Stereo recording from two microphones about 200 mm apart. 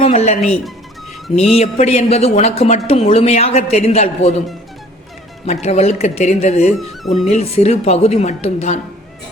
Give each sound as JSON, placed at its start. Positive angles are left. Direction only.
{"t": 0.0, "sound": "speech", "side_deg": 30}
{"t": 5.5, "sound": "speech", "side_deg": 35}
{"t": 6.7, "sound": "speech", "side_deg": 0}
{"t": 7.3, "sound": "speech", "side_deg": 30}